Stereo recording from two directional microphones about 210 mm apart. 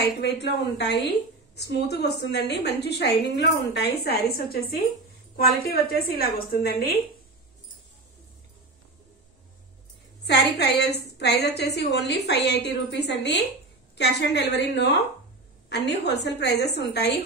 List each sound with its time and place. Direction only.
0.0 s a woman's voice: 50° left (ahead or behind)
10.2 s a woman's voice: 50° left (ahead or behind)